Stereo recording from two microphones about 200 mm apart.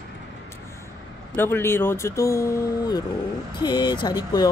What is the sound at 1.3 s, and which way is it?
Speech, 10° left (ahead or behind).